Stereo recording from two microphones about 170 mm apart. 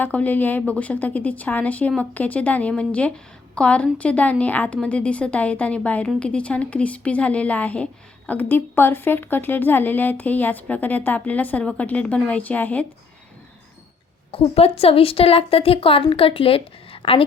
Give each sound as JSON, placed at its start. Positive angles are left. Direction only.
{"t": 0.0, "sound": "a woman's voice", "side_deg": 10}
{"t": 14.3, "sound": "a woman's voice", "side_deg": 35}